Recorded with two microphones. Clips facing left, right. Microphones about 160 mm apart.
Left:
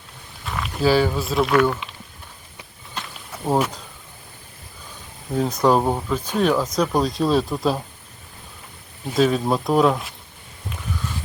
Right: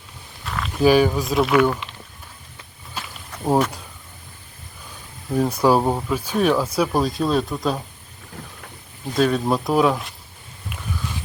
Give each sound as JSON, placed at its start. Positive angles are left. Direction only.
{"t": 0.4, "sound": "a sound", "side_deg": 5}
{"t": 0.8, "sound": "speech", "side_deg": -15}
{"t": 1.4, "sound": "speech", "side_deg": -5}
{"t": 3.0, "sound": "walk", "side_deg": -5}
{"t": 3.3, "sound": "a sound", "side_deg": 5}
{"t": 5.3, "sound": "speech", "side_deg": -10}
{"t": 9.1, "sound": "speech", "side_deg": 0}